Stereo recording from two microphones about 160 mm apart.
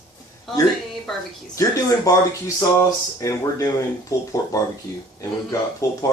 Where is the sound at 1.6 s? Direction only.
20° left (ahead or behind).